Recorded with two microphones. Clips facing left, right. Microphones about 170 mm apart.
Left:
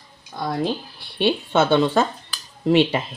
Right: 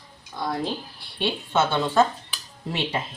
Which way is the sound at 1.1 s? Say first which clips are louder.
Left 5 dB; 70° left (ahead or behind).